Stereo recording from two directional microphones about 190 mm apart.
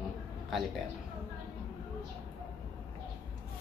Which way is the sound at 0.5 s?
Centre (ahead or behind).